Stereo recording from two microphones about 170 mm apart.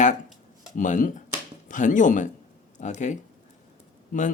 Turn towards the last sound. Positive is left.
turn(degrees=45)  # may be behind; listen again after turning